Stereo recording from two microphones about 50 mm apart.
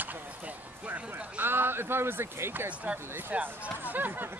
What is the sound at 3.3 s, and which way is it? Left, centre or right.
Speech, right.